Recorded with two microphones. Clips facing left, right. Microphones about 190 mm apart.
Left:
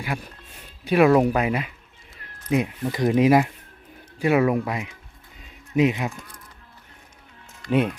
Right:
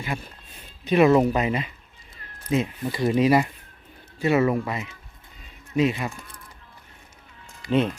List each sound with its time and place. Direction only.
0.0 s speech: 10° left (ahead or behind)
7.7 s speech: 10° left (ahead or behind)